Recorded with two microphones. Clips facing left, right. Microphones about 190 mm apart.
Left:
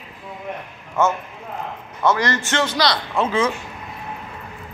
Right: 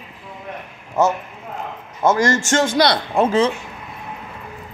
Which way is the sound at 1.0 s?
40° right (ahead or behind).